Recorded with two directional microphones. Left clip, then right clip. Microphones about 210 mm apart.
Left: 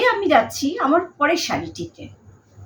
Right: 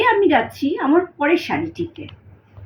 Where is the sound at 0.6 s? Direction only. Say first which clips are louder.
Right 3 dB; 15° left (ahead or behind).